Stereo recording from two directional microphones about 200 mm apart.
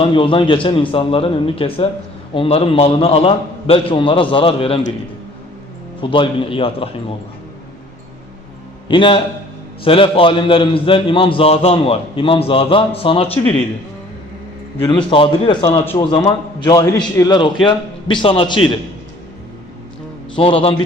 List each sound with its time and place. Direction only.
0.0 s a man's voice: 25° left (ahead or behind)
6.0 s a man's voice: 25° left (ahead or behind)
8.9 s a man's voice: 25° left (ahead or behind)
14.8 s a man's voice: 25° left (ahead or behind)
15.8 s a man's voice: 10° left (ahead or behind)
20.3 s a man's voice: 25° left (ahead or behind)